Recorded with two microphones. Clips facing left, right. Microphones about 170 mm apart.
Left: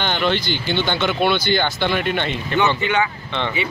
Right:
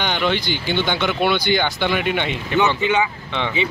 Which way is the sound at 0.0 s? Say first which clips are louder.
Even; 10° right (ahead or behind).